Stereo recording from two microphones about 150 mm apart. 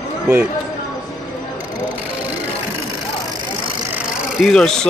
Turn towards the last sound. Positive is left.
turn(degrees=5)  # may be behind; listen again after turning